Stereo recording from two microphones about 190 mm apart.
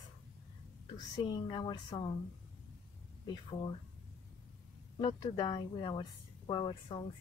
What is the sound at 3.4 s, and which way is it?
Speech, 25° left (ahead or behind).